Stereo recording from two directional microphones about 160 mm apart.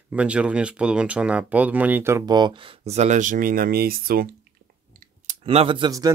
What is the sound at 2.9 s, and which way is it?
Speech, 45° right (ahead or behind).